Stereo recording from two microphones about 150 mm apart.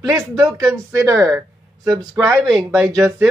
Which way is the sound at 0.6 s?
20° right (ahead or behind).